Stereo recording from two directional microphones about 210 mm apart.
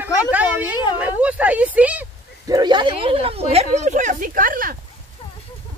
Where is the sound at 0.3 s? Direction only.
10° right (ahead or behind).